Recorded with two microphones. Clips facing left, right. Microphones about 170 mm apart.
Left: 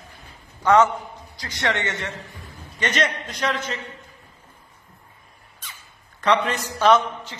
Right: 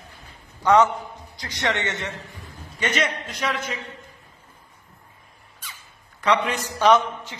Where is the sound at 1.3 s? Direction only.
20° right (ahead or behind).